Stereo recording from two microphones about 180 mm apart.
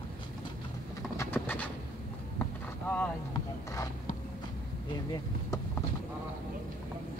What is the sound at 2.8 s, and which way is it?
Vehicle, 10° left (ahead or behind).